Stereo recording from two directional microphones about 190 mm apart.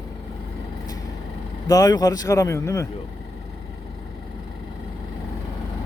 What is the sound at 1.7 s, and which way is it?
Speech, 20° left (ahead or behind).